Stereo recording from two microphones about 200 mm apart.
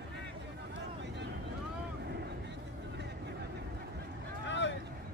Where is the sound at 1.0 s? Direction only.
60° right (ahead or behind).